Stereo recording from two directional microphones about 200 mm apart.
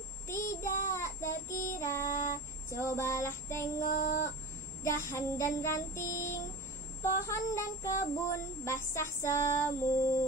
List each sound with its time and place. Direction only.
0.3 s child singing: 15° left (ahead or behind)
3.8 s female singing: 40° left (ahead or behind)
4.8 s child singing: 15° left (ahead or behind)